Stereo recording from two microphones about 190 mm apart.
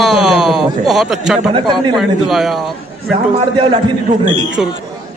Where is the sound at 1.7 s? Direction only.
25° right (ahead or behind).